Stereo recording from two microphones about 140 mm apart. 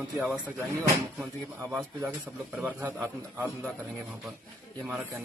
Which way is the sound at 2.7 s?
10° right (ahead or behind).